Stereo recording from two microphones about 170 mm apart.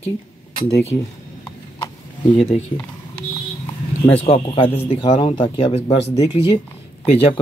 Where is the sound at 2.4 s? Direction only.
35° left (ahead or behind).